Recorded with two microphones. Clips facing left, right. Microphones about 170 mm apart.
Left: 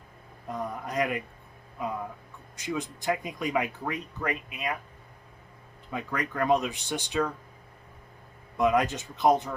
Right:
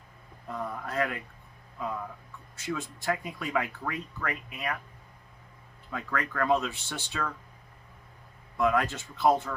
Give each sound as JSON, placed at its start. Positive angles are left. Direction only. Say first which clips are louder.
{"t": 0.4, "sound": "speech", "louder": "left 2 dB", "side_deg": 15}
{"t": 2.6, "sound": "speech", "louder": "left 2 dB", "side_deg": 15}
{"t": 5.9, "sound": "speech", "louder": "left 1 dB", "side_deg": 20}
{"t": 8.5, "sound": "speech", "louder": "left 2 dB", "side_deg": 20}